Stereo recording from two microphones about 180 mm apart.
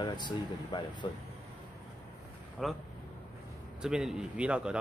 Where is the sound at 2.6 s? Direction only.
Centre (ahead or behind).